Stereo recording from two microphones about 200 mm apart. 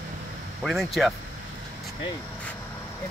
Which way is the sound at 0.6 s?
Centre (ahead or behind).